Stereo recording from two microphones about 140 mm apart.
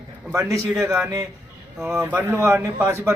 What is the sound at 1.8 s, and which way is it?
Speech, 15° right (ahead or behind).